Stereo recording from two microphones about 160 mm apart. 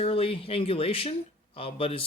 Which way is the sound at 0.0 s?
35° left (ahead or behind).